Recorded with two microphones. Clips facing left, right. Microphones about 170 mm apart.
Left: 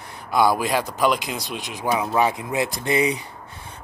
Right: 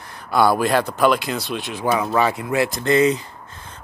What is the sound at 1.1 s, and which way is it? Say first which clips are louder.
Speech: right 4 dB; 15° left (ahead or behind).